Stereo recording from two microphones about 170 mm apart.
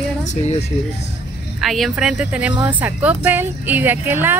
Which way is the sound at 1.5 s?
Centre (ahead or behind).